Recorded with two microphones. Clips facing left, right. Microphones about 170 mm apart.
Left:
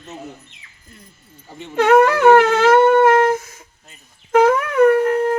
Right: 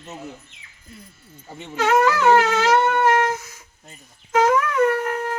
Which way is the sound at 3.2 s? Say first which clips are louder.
Left 7 dB; 50° left (ahead or behind).